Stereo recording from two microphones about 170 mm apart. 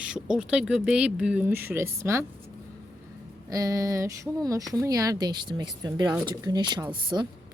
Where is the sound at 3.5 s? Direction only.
20° right (ahead or behind).